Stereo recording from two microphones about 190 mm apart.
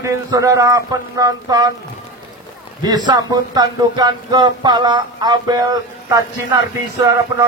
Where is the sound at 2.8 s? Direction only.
20° right (ahead or behind).